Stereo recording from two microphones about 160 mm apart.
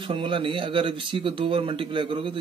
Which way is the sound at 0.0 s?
30° right (ahead or behind).